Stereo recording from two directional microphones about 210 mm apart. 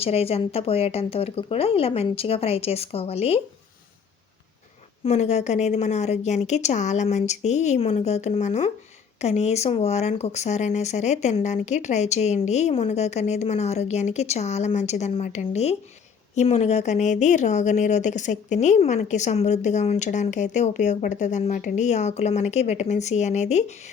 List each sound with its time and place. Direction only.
0.0 s speech: 30° left (ahead or behind)
5.0 s speech: 30° left (ahead or behind)